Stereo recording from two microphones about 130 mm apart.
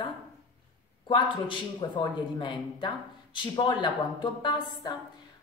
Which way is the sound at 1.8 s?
40° left (ahead or behind).